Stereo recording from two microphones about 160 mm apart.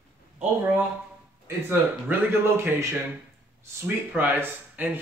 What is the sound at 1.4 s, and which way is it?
A man's voice, 15° right (ahead or behind).